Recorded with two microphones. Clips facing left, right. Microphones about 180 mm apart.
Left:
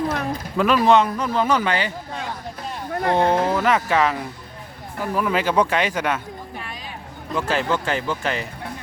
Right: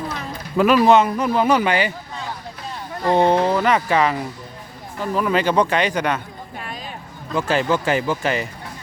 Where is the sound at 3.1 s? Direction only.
Centre (ahead or behind).